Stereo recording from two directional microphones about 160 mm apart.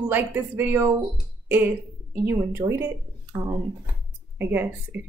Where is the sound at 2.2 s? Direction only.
15° right (ahead or behind).